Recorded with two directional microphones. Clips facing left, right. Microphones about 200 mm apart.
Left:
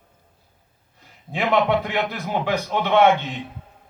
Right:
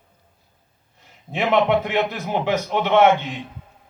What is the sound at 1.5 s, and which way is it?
A man's voice, 20° right (ahead or behind).